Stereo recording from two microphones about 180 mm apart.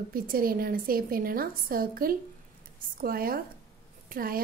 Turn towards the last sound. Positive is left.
turn(degrees=-55)  # may be behind; listen again after turning